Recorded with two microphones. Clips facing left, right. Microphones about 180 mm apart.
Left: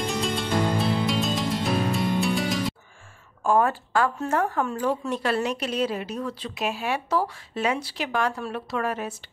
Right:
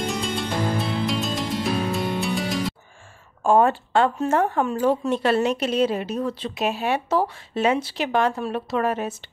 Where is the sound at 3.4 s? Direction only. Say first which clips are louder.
Right 4 dB; 25° right (ahead or behind).